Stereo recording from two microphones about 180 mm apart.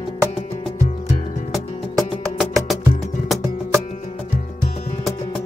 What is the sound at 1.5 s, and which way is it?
Music, centre (ahead or behind).